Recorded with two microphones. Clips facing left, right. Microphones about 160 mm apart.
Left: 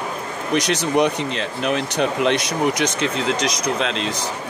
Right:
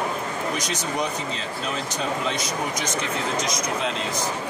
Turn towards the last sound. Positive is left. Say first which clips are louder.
# left 4 dB
turn(degrees=90)